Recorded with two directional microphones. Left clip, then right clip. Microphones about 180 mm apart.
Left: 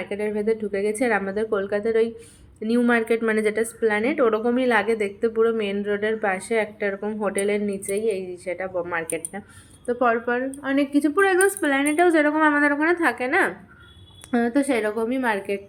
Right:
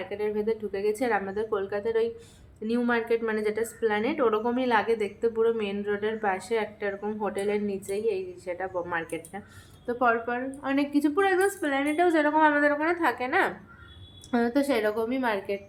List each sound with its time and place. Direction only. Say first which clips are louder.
0.1 s a woman's voice: left 4 dB; 15° left (ahead or behind)